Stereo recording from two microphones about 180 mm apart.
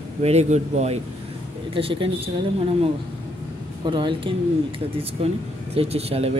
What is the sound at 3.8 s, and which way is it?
A woman's voice, 25° right (ahead or behind).